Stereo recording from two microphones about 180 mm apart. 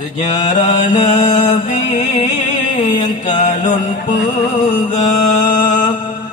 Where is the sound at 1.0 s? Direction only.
40° left (ahead or behind).